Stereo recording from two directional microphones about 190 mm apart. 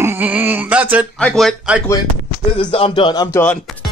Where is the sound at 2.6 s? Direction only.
25° left (ahead or behind).